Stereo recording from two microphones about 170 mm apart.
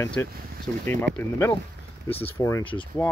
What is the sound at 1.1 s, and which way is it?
Speech, 90° right.